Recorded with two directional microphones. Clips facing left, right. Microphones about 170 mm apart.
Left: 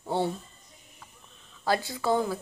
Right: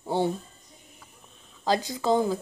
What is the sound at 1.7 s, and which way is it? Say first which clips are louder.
Speech: right 2 dB; 20° right (ahead or behind).